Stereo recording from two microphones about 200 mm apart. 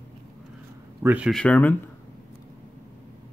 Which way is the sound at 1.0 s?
5° right (ahead or behind).